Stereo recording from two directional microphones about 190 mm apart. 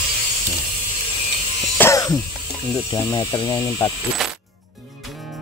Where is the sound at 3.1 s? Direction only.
25° left (ahead or behind).